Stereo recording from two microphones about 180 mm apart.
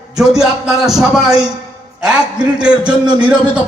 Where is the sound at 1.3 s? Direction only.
20° right (ahead or behind).